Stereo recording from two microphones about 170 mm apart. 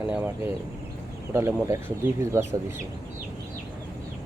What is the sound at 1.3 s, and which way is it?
Speech, 15° right (ahead or behind).